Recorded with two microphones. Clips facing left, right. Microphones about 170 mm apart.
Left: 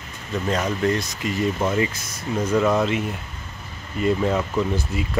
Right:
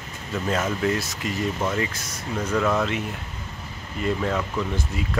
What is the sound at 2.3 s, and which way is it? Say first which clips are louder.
Speech: left 4 dB; 20° left (ahead or behind).